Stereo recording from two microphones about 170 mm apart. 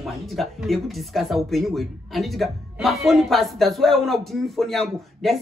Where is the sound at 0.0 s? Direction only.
Centre (ahead or behind).